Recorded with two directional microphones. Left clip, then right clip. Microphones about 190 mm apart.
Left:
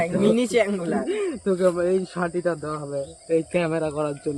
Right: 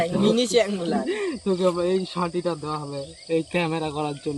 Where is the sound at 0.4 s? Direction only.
45° left (ahead or behind).